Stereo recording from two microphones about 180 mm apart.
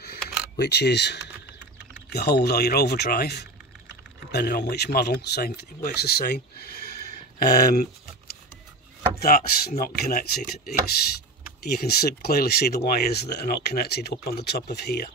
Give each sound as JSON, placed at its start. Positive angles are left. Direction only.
{"t": 0.6, "sound": "speech", "side_deg": 65}
{"t": 11.6, "sound": "speech", "side_deg": 60}